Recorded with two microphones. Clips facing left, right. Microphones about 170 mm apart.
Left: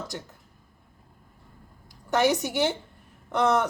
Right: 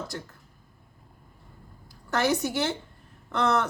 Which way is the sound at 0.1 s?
20° left (ahead or behind).